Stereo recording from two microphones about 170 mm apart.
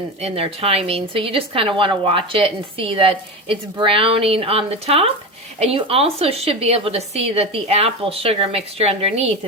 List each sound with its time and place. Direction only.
0.2 s speech: 35° right (ahead or behind)